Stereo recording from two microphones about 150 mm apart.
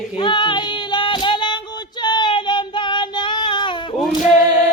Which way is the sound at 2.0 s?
30° left (ahead or behind).